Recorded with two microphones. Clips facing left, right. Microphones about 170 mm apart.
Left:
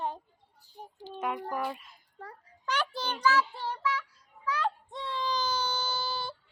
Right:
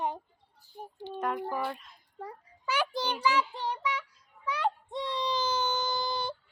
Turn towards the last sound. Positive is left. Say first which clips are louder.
# right 3 dB
turn(degrees=-20)  # may be behind; listen again after turning